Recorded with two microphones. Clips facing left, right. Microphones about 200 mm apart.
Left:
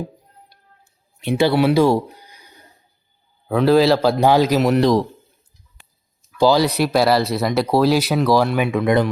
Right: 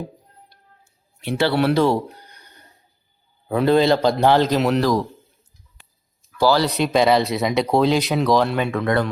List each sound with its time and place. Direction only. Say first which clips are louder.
1.2 s speech: left 3 dB; 15° left (ahead or behind)
4.8 s a man's voice: left 4 dB; 20° left (ahead or behind)
6.3 s speech: left 3 dB; 15° left (ahead or behind)
6.7 s speech: left 1 dB; 5° left (ahead or behind)